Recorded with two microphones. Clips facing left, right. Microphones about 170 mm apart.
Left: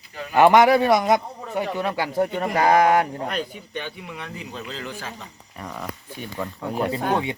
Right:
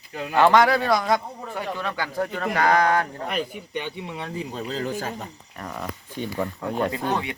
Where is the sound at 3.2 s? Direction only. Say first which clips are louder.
Even; 5° right (ahead or behind).